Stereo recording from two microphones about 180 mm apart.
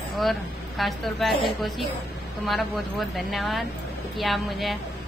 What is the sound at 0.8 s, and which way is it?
A woman's voice, centre (ahead or behind).